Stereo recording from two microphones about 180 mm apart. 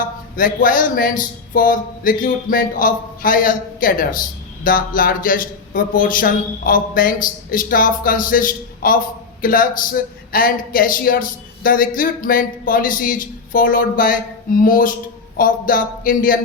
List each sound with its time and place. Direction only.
0.0 s speech: 50° left (ahead or behind)